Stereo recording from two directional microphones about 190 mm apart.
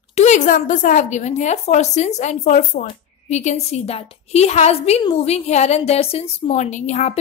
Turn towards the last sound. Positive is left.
turn(degrees=40)  # may be behind; listen again after turning